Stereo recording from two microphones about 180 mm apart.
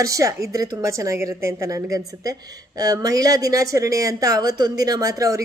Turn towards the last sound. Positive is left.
turn(degrees=-20)  # may be behind; listen again after turning